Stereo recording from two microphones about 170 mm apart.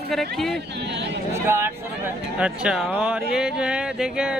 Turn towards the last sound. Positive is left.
turn(degrees=-5)  # may be behind; listen again after turning